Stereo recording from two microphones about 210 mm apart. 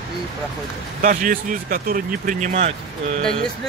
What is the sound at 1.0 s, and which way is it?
Speech, 40° right (ahead or behind).